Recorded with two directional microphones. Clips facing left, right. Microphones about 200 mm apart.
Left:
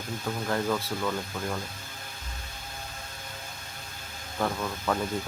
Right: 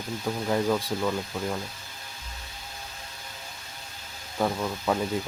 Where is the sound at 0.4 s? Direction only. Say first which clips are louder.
Right 4 dB; 15° right (ahead or behind).